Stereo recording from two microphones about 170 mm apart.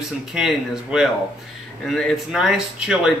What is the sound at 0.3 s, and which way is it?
Speech, 5° right (ahead or behind).